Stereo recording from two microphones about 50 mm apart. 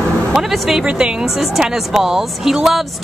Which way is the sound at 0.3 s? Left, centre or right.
Centre.